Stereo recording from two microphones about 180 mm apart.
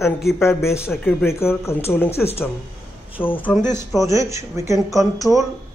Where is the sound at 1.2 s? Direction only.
15° left (ahead or behind).